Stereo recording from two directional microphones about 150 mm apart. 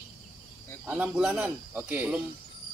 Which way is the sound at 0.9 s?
10° right (ahead or behind).